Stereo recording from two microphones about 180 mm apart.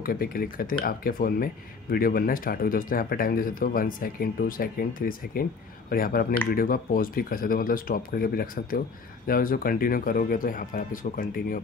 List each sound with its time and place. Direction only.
0.0 s speech: 55° left (ahead or behind)